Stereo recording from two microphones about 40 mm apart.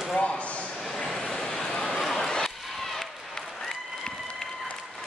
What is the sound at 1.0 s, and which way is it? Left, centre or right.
Vehicle, centre.